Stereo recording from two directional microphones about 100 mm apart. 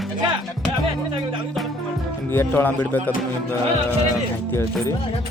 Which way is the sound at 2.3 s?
20° left (ahead or behind).